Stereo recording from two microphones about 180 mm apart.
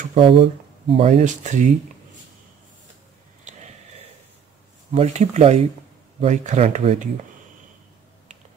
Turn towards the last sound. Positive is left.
turn(degrees=-40)  # may be behind; listen again after turning